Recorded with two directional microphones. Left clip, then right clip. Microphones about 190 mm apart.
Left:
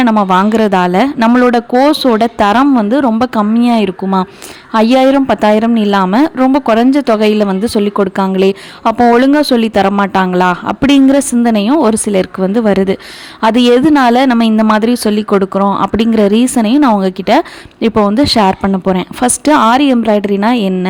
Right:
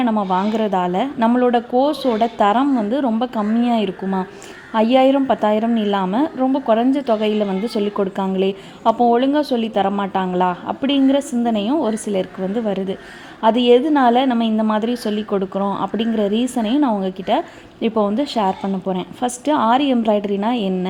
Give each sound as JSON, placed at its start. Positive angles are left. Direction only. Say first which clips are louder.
{"t": 0.0, "sound": "speech", "louder": "left 9 dB", "side_deg": 35}
{"t": 9.0, "sound": "speech", "louder": "left 10 dB", "side_deg": 40}